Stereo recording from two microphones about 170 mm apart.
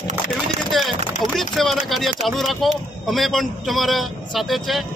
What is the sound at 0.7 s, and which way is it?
A man's voice, centre (ahead or behind).